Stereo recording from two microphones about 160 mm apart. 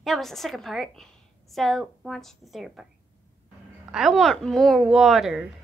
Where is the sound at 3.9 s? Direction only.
Centre (ahead or behind).